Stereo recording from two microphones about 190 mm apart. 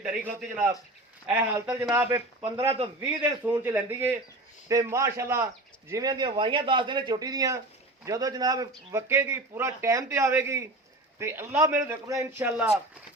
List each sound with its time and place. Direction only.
0.0 s a man's voice: 5° right (ahead or behind)
1.7 s a man's voice: 15° right (ahead or behind)